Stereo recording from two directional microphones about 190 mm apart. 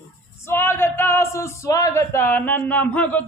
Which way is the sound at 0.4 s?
10° left (ahead or behind).